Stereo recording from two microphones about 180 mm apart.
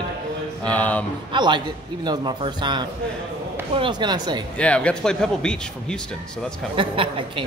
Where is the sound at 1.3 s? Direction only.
25° right (ahead or behind).